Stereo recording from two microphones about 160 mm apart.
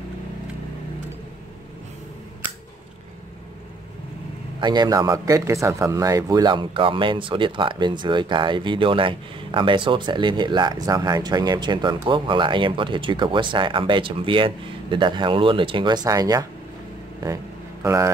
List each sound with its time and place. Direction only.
4.6 s speech: 25° right (ahead or behind)
17.8 s speech: 20° right (ahead or behind)